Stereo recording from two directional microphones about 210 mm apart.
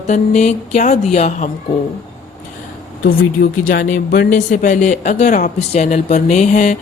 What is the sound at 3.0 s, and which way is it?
Speech, 45° left (ahead or behind).